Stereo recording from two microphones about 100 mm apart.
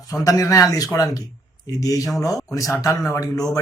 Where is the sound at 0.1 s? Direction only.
35° left (ahead or behind).